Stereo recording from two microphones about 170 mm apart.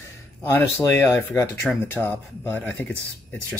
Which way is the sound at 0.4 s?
10° left (ahead or behind).